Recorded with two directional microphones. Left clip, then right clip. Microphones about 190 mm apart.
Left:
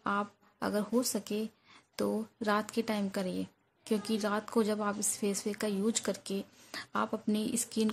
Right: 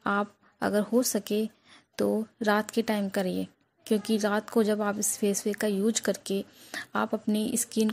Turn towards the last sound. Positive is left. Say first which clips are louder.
# right 5 dB
turn(degrees=-20)  # may be behind; listen again after turning